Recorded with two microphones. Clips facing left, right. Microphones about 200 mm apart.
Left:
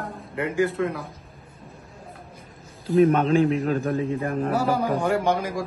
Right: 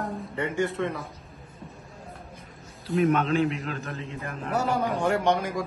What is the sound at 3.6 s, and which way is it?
Speech, 45° left (ahead or behind).